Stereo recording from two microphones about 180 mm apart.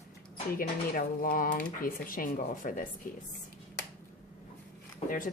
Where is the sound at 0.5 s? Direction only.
50° left (ahead or behind).